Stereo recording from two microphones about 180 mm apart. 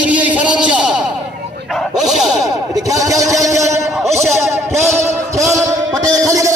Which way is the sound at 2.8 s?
20° right (ahead or behind).